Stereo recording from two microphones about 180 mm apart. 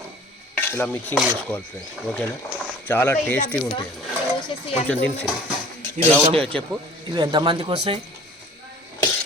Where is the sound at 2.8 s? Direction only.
10° left (ahead or behind).